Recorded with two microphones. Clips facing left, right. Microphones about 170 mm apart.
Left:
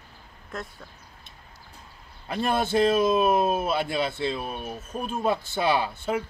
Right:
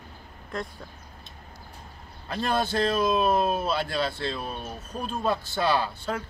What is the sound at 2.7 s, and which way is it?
Speech, 10° left (ahead or behind).